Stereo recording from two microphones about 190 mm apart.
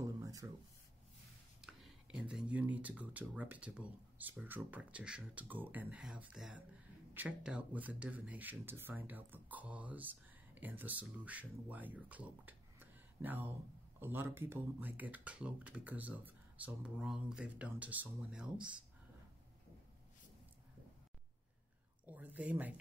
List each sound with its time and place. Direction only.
0.2 s a sound: 20° right (ahead or behind)
1.6 s speech: centre (ahead or behind)
22.0 s speech: 10° right (ahead or behind)